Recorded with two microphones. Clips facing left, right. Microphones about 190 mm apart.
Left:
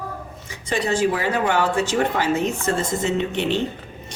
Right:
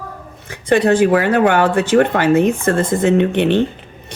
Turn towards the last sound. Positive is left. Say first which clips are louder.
# right 8 dB
turn(degrees=-60)  # may be behind; listen again after turning